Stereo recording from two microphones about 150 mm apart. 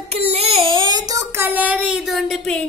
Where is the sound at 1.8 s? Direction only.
5° right (ahead or behind).